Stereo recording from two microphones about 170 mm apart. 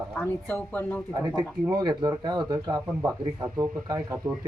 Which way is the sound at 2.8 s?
10° right (ahead or behind).